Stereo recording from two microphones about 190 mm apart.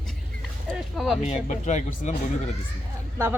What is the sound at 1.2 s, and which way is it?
Speech, 40° left (ahead or behind).